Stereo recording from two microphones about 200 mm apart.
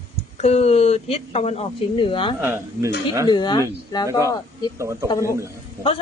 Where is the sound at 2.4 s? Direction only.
10° right (ahead or behind).